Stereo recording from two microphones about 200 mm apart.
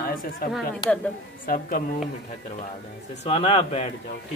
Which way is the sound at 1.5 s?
45° left (ahead or behind).